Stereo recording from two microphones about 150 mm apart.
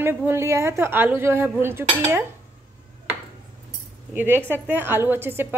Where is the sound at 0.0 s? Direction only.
15° right (ahead or behind).